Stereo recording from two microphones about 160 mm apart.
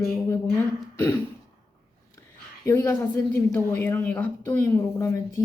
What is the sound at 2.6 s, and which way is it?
A woman's voice, 20° left (ahead or behind).